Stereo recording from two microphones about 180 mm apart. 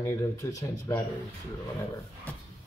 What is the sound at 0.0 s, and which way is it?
Speech, 20° left (ahead or behind).